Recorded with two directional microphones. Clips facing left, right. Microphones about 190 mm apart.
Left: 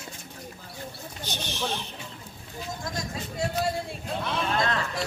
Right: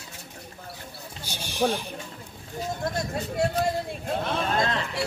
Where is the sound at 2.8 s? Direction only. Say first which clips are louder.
Right 5 dB; 60° right (ahead or behind).